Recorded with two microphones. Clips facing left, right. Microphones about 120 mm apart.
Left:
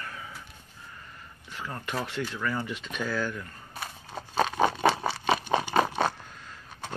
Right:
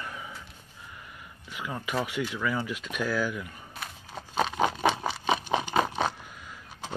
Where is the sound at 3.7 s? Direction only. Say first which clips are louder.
Left 2 dB; centre (ahead or behind).